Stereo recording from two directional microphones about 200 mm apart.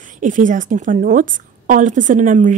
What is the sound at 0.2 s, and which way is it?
A woman's voice, 40° right (ahead or behind).